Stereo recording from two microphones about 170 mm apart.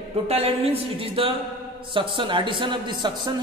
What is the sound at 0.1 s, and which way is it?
A woman's voice, 35° right (ahead or behind).